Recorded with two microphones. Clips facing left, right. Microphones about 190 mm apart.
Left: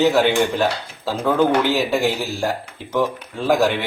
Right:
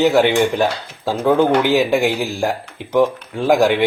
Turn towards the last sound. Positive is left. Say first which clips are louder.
# right 3 dB
turn(degrees=-15)  # may be behind; listen again after turning